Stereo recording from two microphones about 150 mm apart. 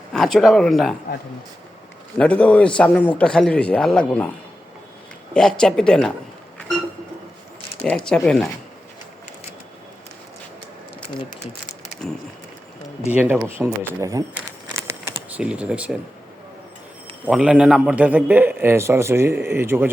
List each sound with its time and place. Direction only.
0.1 s speech: centre (ahead or behind)
2.1 s a man's voice: 5° left (ahead or behind)
5.3 s speech: 5° left (ahead or behind)
7.9 s speech: 5° left (ahead or behind)
12.0 s speech: 5° left (ahead or behind)
13.1 s a man's voice: 10° right (ahead or behind)
14.3 s a sound: 20° right (ahead or behind)
15.4 s a man's voice: 5° right (ahead or behind)
17.2 s a man's voice: 5° right (ahead or behind)